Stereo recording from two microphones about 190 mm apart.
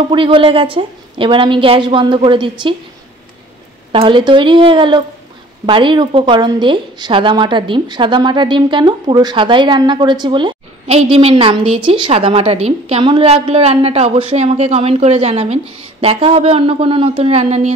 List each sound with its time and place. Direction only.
0.1 s a woman's voice: 25° right (ahead or behind)
3.9 s a woman's voice: 25° right (ahead or behind)